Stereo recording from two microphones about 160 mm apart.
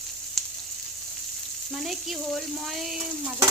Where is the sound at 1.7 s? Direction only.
Centre (ahead or behind).